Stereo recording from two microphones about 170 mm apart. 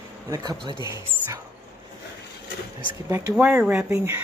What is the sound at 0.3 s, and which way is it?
Speech, 25° right (ahead or behind).